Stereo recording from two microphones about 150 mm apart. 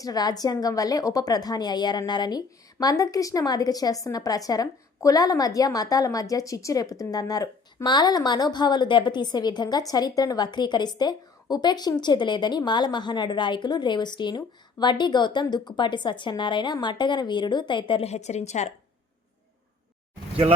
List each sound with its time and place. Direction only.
0.0 s a woman's voice: 25° left (ahead or behind); by 18.7 s 50° left (ahead or behind)